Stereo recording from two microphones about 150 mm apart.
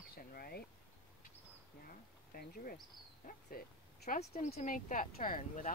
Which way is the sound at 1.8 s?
75° left (ahead or behind).